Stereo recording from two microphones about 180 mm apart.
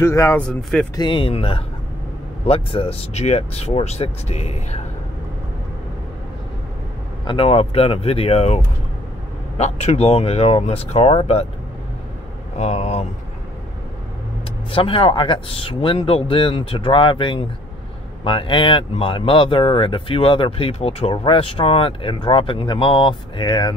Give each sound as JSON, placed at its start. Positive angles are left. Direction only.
{"t": 0.0, "sound": "speech", "side_deg": 15}
{"t": 0.5, "sound": "speech", "side_deg": 5}
{"t": 0.9, "sound": "speech", "side_deg": 25}
{"t": 7.2, "sound": "speech", "side_deg": 30}
{"t": 12.5, "sound": "speech", "side_deg": 35}
{"t": 14.7, "sound": "speech", "side_deg": 30}